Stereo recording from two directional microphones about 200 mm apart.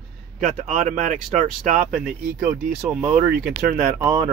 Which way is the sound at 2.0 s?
5° right (ahead or behind).